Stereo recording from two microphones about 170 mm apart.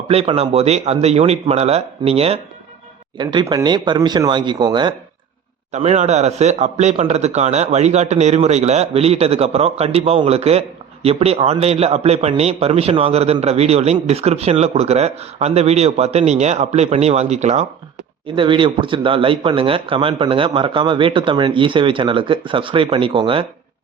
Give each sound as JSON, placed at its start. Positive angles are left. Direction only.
{"t": 0.1, "sound": "speech", "side_deg": -35}
{"t": 3.2, "sound": "speech", "side_deg": -25}
{"t": 5.7, "sound": "speech", "side_deg": -40}
{"t": 18.3, "sound": "speech", "side_deg": -30}